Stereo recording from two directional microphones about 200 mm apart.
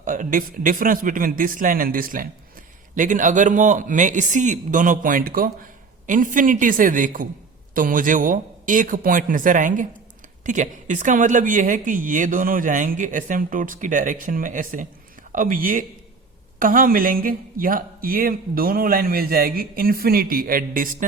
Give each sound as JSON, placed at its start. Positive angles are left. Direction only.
{"t": 0.0, "sound": "speech", "side_deg": -40}